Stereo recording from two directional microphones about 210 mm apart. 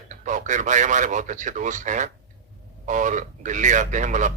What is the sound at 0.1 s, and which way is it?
A man's voice, 35° right (ahead or behind).